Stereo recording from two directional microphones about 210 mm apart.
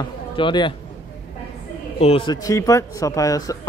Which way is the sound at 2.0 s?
25° left (ahead or behind).